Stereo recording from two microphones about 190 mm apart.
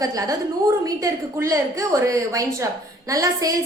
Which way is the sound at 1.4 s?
15° right (ahead or behind).